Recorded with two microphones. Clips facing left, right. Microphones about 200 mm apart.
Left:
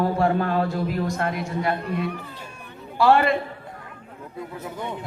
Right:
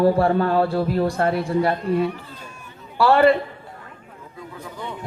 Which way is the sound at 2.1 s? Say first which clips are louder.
Left 2 dB; 60° left (ahead or behind).